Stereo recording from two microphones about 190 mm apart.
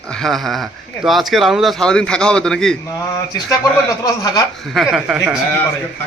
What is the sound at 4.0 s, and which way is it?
Speech, 20° left (ahead or behind).